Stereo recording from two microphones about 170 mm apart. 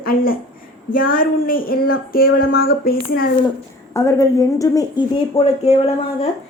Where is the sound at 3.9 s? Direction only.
15° left (ahead or behind).